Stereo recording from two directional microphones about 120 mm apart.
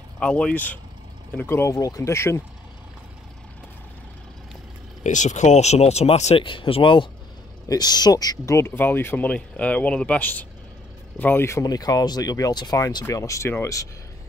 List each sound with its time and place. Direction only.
0.2 s speech: 10° left (ahead or behind)
5.0 s speech: 85° left; by 6.3 s 70° left (ahead or behind)
6.3 s speech: 45° left (ahead or behind)
7.6 s speech: 30° left (ahead or behind)